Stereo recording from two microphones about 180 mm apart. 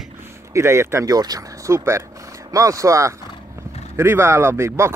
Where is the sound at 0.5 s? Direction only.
15° right (ahead or behind).